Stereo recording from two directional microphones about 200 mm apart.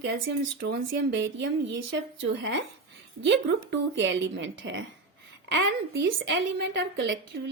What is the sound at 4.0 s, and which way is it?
Speech, 65° right (ahead or behind).